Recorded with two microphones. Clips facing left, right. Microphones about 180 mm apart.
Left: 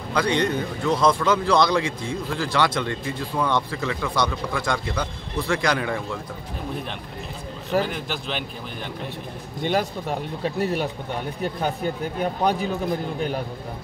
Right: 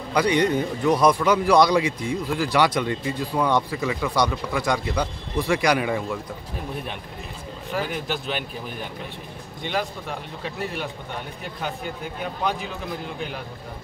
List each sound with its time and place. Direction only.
0.1 s a man's voice: 15° right (ahead or behind)
7.9 s speech: 5° right (ahead or behind)
9.7 s speech: 45° left (ahead or behind)
12.2 s speech: 45° left (ahead or behind)